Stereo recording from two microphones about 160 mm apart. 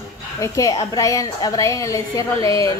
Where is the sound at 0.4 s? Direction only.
20° left (ahead or behind).